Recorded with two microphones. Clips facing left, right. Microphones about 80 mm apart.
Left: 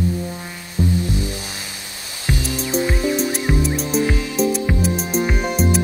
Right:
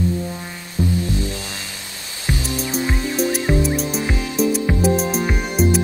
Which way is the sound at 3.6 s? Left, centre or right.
Centre.